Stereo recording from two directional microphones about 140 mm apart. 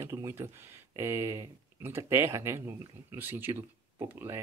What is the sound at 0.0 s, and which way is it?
Speech, 20° right (ahead or behind).